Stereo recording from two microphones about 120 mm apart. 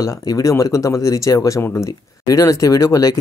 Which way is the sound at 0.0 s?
30° left (ahead or behind).